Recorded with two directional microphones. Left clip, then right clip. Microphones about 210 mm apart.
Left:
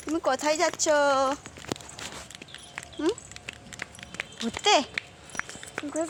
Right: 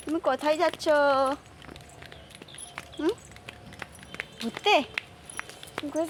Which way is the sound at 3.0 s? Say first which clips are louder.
Even; centre (ahead or behind).